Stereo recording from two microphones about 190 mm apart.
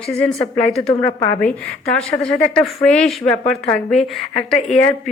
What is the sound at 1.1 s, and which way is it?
Speech, 20° left (ahead or behind).